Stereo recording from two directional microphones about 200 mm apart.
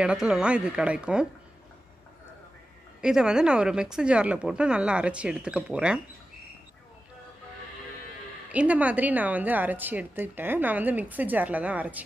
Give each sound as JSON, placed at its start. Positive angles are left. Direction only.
{"t": 0.0, "sound": "a woman's voice", "side_deg": -5}
{"t": 3.0, "sound": "a woman's voice", "side_deg": -5}
{"t": 8.5, "sound": "a woman's voice", "side_deg": -5}